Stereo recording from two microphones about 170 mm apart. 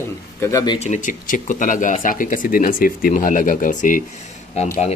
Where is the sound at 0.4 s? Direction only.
20° left (ahead or behind).